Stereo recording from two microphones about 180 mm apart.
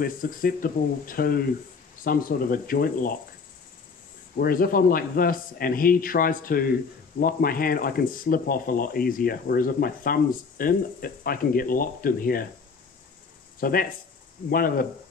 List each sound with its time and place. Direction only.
0.0 s speech: 55° left (ahead or behind)
4.4 s speech: 55° left (ahead or behind)
13.6 s speech: 55° left (ahead or behind)